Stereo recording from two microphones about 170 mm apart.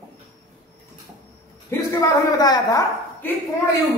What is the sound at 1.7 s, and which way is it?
A woman's voice, 20° left (ahead or behind).